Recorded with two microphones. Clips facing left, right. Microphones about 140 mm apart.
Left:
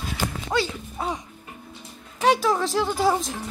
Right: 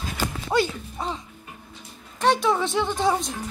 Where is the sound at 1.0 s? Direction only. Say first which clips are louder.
Left 2 dB; 5° left (ahead or behind).